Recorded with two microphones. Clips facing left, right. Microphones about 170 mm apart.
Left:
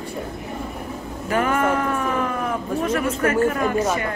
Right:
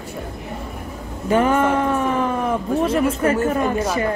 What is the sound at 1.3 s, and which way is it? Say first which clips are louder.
Speech: right 4 dB; 30° right (ahead or behind).